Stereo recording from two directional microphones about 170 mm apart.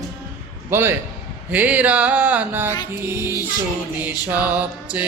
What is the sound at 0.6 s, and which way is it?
Speech, 15° right (ahead or behind).